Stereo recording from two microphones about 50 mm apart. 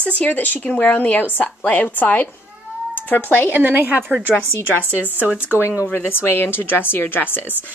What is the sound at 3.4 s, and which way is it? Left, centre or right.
A woman's voice, right.